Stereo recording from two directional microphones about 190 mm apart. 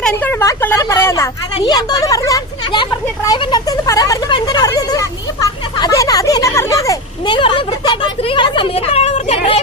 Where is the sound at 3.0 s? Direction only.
20° left (ahead or behind).